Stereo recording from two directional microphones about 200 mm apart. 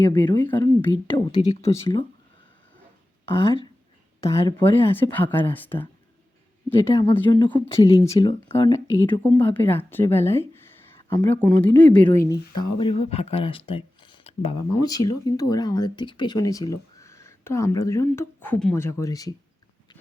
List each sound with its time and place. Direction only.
0.1 s speech: 20° left (ahead or behind)
0.4 s speech: 10° left (ahead or behind)
3.2 s speech: 25° left (ahead or behind)
4.2 s speech: 15° left (ahead or behind)
8.3 s speech: 30° left (ahead or behind)
8.7 s speech: 15° left (ahead or behind)
12.3 s speech: 25° left (ahead or behind)